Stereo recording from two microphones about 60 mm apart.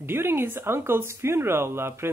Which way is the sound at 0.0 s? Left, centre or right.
Right.